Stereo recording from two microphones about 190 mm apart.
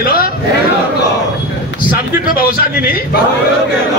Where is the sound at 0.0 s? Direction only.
50° left (ahead or behind).